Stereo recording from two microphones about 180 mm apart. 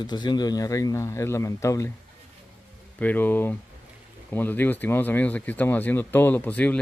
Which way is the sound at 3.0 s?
10° left (ahead or behind).